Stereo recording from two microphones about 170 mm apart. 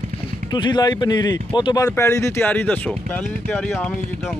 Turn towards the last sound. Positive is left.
turn(degrees=10)  # may be behind; listen again after turning